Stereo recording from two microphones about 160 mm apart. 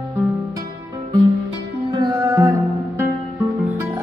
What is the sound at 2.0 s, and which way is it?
Music, 20° right (ahead or behind).